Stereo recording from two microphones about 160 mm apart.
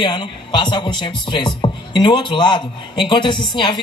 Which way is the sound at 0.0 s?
30° left (ahead or behind).